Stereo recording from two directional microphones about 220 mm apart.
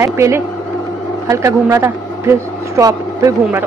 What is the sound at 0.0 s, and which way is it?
A man's voice, 10° right (ahead or behind).